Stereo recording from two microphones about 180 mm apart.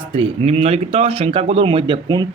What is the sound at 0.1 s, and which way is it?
A man's voice, 30° right (ahead or behind).